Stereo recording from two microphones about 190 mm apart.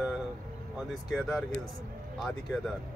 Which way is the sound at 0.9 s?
Centre (ahead or behind).